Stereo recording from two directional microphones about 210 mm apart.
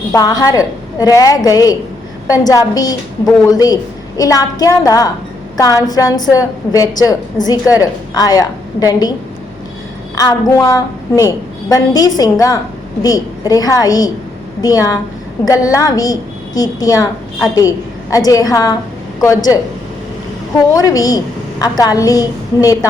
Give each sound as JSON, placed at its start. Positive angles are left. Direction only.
{"t": 0.1, "sound": "a woman's voice", "side_deg": 20}
{"t": 10.2, "sound": "a woman's voice", "side_deg": 15}
{"t": 20.7, "sound": "a woman's voice", "side_deg": 15}